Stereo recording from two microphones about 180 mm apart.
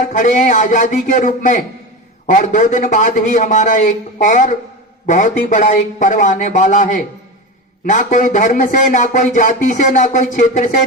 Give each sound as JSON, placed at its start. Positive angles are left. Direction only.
{"t": 0.1, "sound": "speech", "side_deg": 45}